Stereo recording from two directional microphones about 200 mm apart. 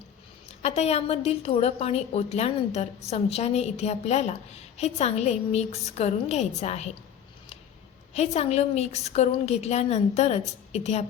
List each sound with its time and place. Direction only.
0.6 s a woman's voice: 30° left (ahead or behind)
8.1 s a woman's voice: 35° left (ahead or behind)